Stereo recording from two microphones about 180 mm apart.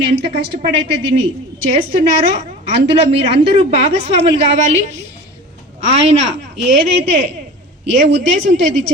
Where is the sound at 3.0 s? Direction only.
35° right (ahead or behind).